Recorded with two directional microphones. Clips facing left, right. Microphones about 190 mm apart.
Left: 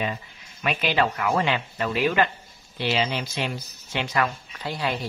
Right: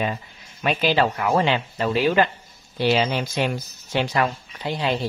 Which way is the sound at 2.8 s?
45° right (ahead or behind).